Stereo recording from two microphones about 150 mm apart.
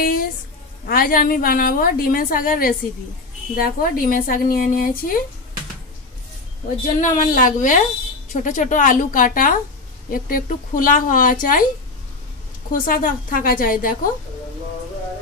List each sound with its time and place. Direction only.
0.0 s a sound: 75° left (ahead or behind)
0.8 s a woman's voice: 75° left (ahead or behind)
7.0 s speech: 60° left (ahead or behind)
12.7 s a woman's voice: 70° left (ahead or behind)